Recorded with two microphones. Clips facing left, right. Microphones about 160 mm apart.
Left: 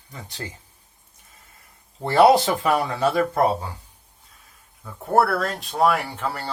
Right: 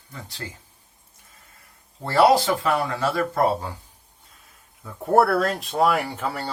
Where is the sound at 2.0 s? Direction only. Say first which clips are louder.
Left 2 dB; 20° left (ahead or behind).